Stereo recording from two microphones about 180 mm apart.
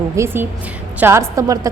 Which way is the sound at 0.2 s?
15° right (ahead or behind).